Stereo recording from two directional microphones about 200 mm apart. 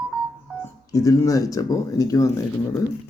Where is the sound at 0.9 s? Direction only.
15° left (ahead or behind).